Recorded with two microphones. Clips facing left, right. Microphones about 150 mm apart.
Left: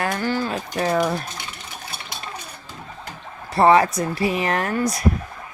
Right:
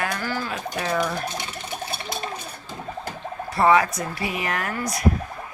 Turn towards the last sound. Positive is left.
turn(degrees=30)  # may be behind; listen again after turning